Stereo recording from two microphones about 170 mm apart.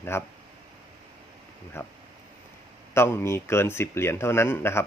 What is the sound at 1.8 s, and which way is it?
Speech, 15° left (ahead or behind).